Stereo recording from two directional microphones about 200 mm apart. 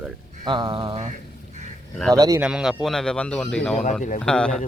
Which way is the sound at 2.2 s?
15° right (ahead or behind).